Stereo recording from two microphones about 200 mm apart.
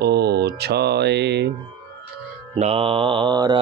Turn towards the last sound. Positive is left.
turn(degrees=-20)  # may be behind; listen again after turning